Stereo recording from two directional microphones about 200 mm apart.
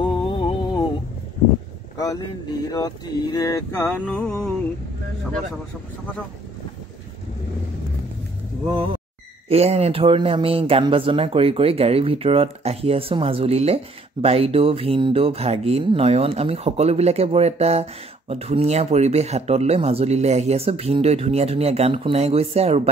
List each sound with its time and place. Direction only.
0.0 s music: 25° left (ahead or behind)
2.0 s speech: 20° left (ahead or behind)
2.7 s a sound: 20° left (ahead or behind); by 4.6 s 5° left (ahead or behind)
9.5 s speech: 30° right (ahead or behind)